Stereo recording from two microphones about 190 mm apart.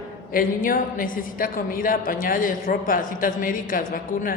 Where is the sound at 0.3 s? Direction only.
45° left (ahead or behind).